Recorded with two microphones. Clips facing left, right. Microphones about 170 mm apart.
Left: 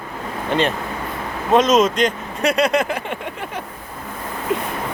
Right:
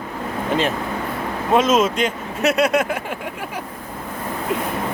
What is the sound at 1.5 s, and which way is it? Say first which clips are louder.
Speech: left 2 dB; 5° right (ahead or behind).